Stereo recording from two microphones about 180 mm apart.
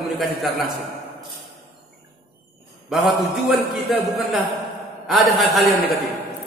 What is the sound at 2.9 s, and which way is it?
Speech, centre (ahead or behind).